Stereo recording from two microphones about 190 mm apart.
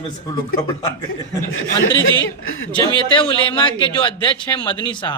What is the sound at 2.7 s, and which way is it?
A man's voice, 25° left (ahead or behind).